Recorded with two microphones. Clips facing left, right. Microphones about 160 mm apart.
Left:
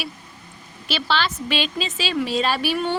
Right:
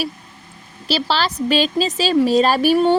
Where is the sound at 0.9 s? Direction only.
40° right (ahead or behind).